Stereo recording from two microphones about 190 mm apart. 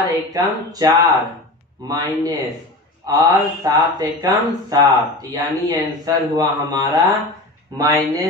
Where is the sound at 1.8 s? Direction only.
20° right (ahead or behind).